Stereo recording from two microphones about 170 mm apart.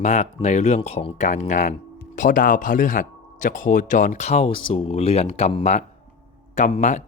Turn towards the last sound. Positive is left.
turn(degrees=40)  # may be behind; listen again after turning